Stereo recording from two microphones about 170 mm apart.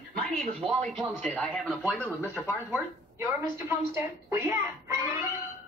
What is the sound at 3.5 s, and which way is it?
A woman's voice, 15° right (ahead or behind).